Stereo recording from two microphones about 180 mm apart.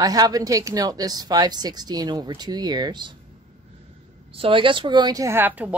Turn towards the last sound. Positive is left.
turn(degrees=-10)  # may be behind; listen again after turning